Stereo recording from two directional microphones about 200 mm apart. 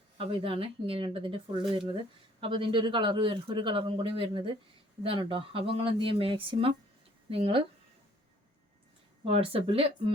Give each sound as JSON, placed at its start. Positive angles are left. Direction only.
{"t": 0.2, "sound": "a man's voice", "side_deg": -25}
{"t": 9.2, "sound": "a man's voice", "side_deg": -30}